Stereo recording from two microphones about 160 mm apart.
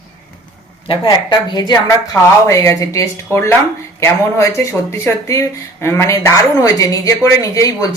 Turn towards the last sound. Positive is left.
turn(degrees=20)  # may be behind; listen again after turning